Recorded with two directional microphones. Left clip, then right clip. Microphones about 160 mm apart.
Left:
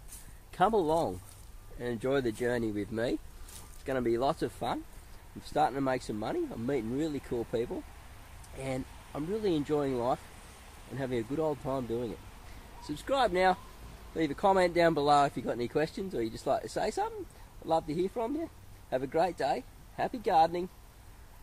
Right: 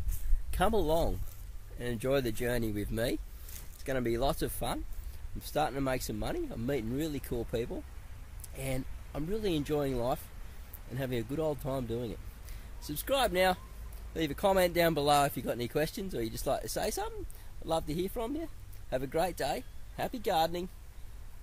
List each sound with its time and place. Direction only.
0.5 s speech: 15° right (ahead or behind)